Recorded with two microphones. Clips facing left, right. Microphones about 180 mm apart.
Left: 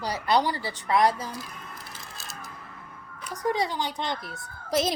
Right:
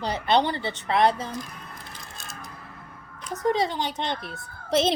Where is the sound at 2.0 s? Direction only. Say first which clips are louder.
Right 1 dB; centre (ahead or behind).